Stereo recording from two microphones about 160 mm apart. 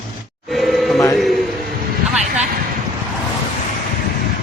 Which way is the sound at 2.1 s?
45° right (ahead or behind).